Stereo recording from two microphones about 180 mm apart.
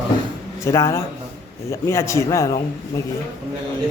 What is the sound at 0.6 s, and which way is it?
A man's voice, 15° left (ahead or behind).